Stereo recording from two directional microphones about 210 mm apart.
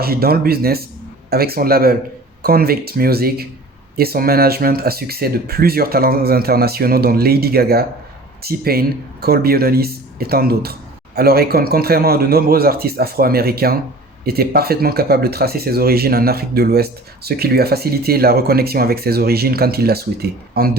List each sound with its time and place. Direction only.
0.0 s speech: 45° right (ahead or behind)